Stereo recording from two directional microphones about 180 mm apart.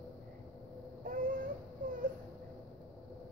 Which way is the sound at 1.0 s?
50° right (ahead or behind).